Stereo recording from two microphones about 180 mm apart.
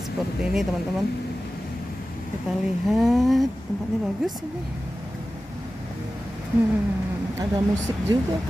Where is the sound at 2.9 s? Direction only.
Centre (ahead or behind).